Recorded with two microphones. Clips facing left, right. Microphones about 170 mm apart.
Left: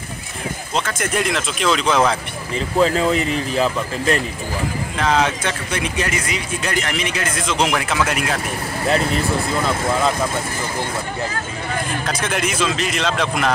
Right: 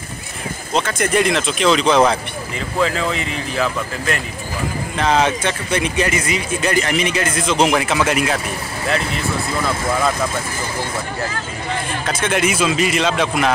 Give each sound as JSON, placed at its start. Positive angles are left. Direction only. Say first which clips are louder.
{"t": 0.7, "sound": "speech", "louder": "right 5 dB", "side_deg": 0}
{"t": 2.5, "sound": "speech", "louder": "left 3 dB", "side_deg": 35}
{"t": 4.9, "sound": "speech", "louder": "right 2 dB", "side_deg": 0}
{"t": 8.8, "sound": "speech", "louder": "left 3 dB", "side_deg": 35}
{"t": 12.1, "sound": "speech", "louder": "right 6 dB", "side_deg": 0}